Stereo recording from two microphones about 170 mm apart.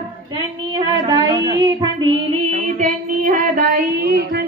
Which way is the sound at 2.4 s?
50° right (ahead or behind).